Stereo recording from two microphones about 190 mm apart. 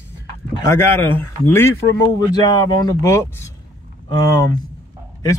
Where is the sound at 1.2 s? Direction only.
10° left (ahead or behind).